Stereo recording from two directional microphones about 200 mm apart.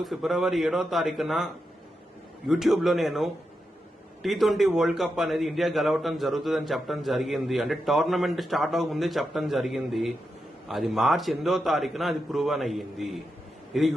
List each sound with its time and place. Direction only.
0.0 s a man's voice: centre (ahead or behind)